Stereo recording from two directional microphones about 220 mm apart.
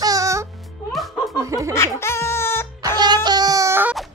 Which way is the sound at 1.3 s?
15° right (ahead or behind).